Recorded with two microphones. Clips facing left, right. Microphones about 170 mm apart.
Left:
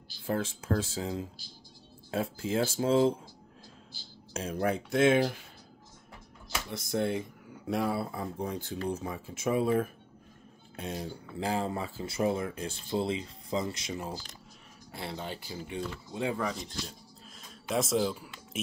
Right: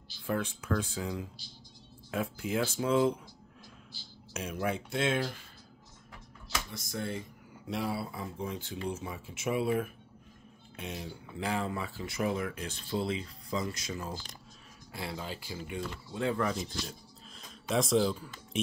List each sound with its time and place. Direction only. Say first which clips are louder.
0.3 s speech: left 1 dB; 25° left (ahead or behind)
4.3 s a sound: left 3 dB; 30° left (ahead or behind)
4.6 s speech: left 5 dB; 35° left (ahead or behind)
5.0 s speech: left 7 dB; 55° left (ahead or behind)
6.7 s speech: left 9 dB; 60° left (ahead or behind); by 15.8 s 30° left (ahead or behind)
16.1 s speech: right 2 dB; 20° left (ahead or behind)
16.4 s speech: right 2 dB; centre (ahead or behind)